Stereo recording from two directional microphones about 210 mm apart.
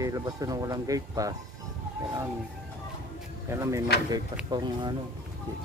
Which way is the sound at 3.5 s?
15° right (ahead or behind).